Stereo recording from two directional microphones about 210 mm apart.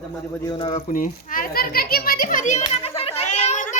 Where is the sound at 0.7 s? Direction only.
35° left (ahead or behind).